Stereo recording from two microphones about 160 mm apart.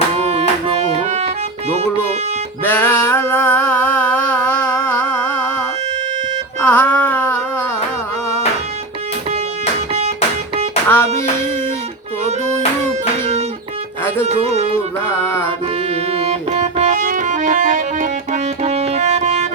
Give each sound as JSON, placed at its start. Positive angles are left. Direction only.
{"t": 0.2, "sound": "music", "side_deg": -40}
{"t": 2.6, "sound": "singing", "side_deg": 10}
{"t": 6.6, "sound": "a sound", "side_deg": 10}
{"t": 10.8, "sound": "music", "side_deg": 15}
{"t": 12.8, "sound": "music", "side_deg": -45}
{"t": 15.9, "sound": "music", "side_deg": -40}